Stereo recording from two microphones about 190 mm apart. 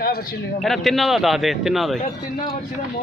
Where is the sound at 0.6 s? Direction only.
Centre (ahead or behind).